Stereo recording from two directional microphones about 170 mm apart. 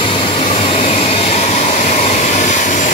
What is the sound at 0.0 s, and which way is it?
Vehicle, 35° left (ahead or behind).